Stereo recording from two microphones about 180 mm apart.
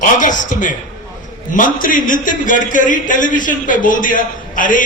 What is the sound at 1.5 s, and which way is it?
A man's voice, 45° left (ahead or behind).